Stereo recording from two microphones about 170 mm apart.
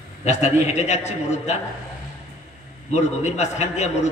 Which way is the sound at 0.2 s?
40° left (ahead or behind).